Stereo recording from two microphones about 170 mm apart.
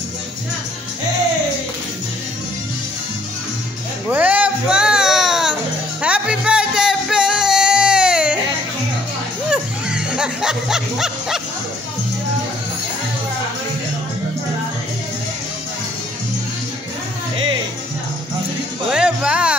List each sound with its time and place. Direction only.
4.1 s music: 10° right (ahead or behind)
9.5 s music: 5° right (ahead or behind)
18.9 s music: 5° right (ahead or behind)